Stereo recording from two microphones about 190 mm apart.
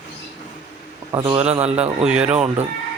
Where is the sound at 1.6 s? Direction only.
35° right (ahead or behind).